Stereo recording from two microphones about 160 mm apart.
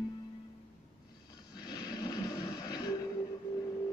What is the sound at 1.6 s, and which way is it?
Music, 25° left (ahead or behind).